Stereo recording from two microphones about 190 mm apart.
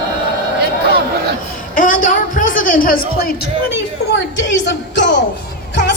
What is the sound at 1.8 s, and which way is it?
A woman's voice, 45° left (ahead or behind).